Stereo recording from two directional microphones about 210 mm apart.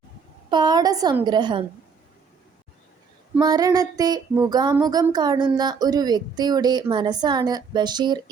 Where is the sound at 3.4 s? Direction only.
20° right (ahead or behind).